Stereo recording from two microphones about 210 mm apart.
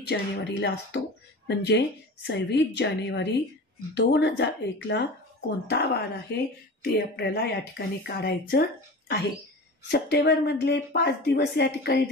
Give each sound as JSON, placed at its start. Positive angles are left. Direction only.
{"t": 0.0, "sound": "a woman's voice", "side_deg": 50}